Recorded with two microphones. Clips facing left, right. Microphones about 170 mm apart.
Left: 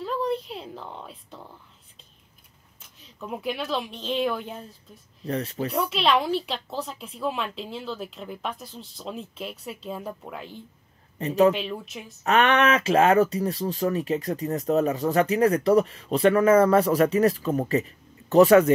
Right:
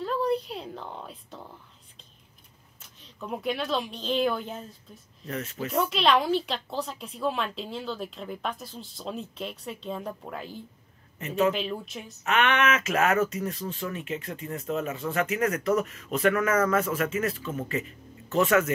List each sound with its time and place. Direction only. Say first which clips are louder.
0.0 s a sound: even; centre (ahead or behind)
2.8 s speech: left 1 dB; centre (ahead or behind)
5.2 s speech: left 5 dB; 35° left (ahead or behind)
5.9 s speech: even; centre (ahead or behind)
11.1 s speech: left 6 dB; 35° left (ahead or behind)
11.5 s speech: even; centre (ahead or behind)
12.2 s speech: left 4 dB; 35° left (ahead or behind)